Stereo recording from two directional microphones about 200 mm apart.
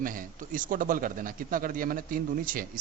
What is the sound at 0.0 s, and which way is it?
A man's voice, 40° right (ahead or behind).